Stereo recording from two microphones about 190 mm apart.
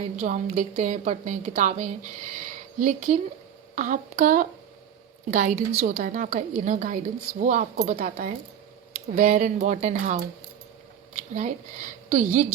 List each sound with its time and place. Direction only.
0.2 s a woman's voice: 45° right (ahead or behind)
11.2 s a woman's voice: 45° right (ahead or behind)